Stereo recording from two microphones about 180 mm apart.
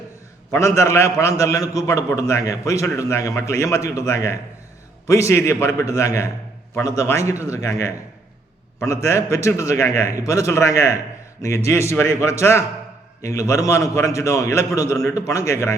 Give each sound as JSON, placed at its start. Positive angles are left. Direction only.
{"t": 0.5, "sound": "a man's voice", "side_deg": 15}